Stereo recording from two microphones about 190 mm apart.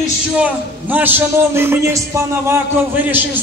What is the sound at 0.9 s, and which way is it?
A man's voice, 10° right (ahead or behind).